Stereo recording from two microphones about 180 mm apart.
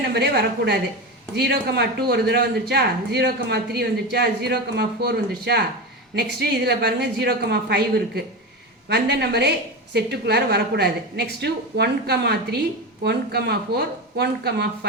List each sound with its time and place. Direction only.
0.1 s a woman's voice: 65° right (ahead or behind)